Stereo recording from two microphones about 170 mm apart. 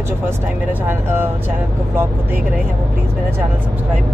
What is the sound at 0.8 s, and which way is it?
Speech, 15° right (ahead or behind).